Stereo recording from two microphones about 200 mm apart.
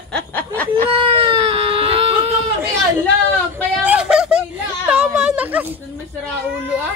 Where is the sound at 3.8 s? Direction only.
5° right (ahead or behind).